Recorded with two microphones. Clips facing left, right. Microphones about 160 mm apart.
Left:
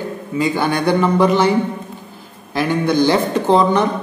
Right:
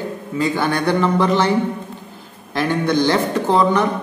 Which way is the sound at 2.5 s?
5° left (ahead or behind).